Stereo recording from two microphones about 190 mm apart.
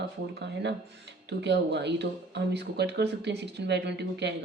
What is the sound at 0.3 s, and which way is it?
Speech, 65° right (ahead or behind).